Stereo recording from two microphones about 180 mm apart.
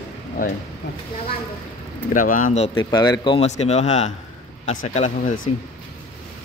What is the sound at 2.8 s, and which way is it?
Speech, 25° left (ahead or behind).